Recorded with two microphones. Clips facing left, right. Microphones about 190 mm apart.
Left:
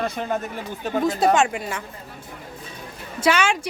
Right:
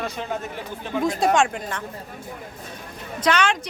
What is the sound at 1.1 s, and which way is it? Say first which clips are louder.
Speech: left 1 dB; 5° left (ahead or behind).